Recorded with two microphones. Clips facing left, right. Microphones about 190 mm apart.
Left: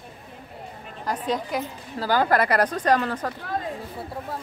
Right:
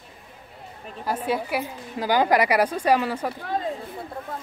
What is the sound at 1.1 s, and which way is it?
A woman's voice, 10° right (ahead or behind).